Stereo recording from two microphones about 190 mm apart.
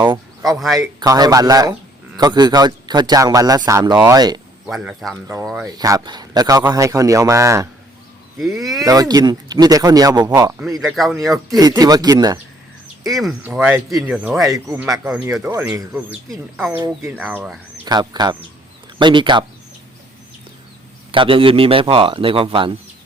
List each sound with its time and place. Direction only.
0.0 s speech: 20° right (ahead or behind)
4.6 s speech: 5° right (ahead or behind)
5.1 s a man's voice: 15° right (ahead or behind)
8.4 s speech: centre (ahead or behind)
8.8 s speech: 20° right (ahead or behind)
10.8 s speech: centre (ahead or behind)
11.6 s speech: 20° right (ahead or behind)
13.1 s a man's voice: centre (ahead or behind); by 14.8 s 15° right (ahead or behind)
15.0 s a man's voice: 5° right (ahead or behind)
17.8 s speech: 20° right (ahead or behind)
21.1 s speech: 30° right (ahead or behind)